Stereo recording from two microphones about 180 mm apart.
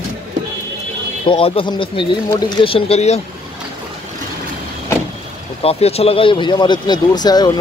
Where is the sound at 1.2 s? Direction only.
30° left (ahead or behind).